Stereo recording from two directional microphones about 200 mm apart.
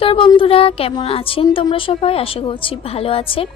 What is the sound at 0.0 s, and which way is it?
Speech, 25° left (ahead or behind).